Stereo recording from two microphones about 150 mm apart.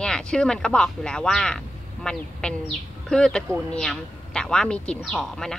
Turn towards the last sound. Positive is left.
turn(degrees=5)  # may be behind; listen again after turning